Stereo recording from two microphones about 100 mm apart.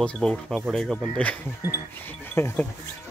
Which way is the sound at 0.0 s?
10° left (ahead or behind).